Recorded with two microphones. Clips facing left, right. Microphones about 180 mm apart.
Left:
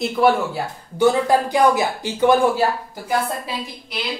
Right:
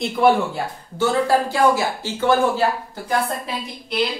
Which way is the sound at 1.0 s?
15° left (ahead or behind).